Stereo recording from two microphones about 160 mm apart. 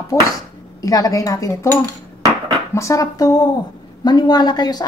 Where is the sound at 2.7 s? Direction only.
20° left (ahead or behind).